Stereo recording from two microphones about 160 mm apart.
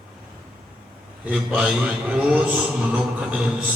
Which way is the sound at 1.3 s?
5° right (ahead or behind).